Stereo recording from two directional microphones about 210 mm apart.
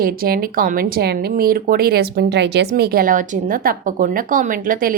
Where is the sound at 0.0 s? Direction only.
45° right (ahead or behind).